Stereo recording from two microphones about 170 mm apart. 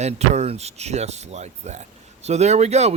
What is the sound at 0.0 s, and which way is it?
A man's voice, 40° right (ahead or behind).